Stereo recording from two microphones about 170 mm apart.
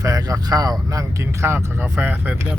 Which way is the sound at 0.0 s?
20° right (ahead or behind).